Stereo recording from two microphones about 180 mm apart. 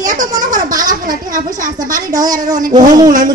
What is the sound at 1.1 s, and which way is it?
Speech, 45° right (ahead or behind).